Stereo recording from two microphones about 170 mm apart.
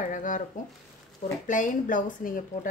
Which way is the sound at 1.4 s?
50° left (ahead or behind).